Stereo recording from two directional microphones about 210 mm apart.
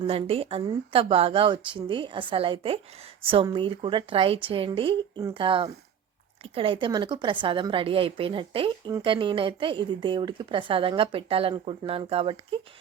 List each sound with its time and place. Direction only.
0.1 s a woman's voice: 25° right (ahead or behind)